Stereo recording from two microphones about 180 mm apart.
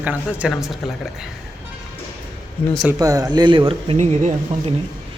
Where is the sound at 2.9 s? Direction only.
20° right (ahead or behind); by 4.7 s 40° right (ahead or behind).